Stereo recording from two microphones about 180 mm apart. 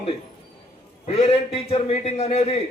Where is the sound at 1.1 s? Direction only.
35° left (ahead or behind).